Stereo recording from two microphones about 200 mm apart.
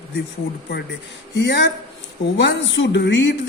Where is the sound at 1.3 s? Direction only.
60° left (ahead or behind).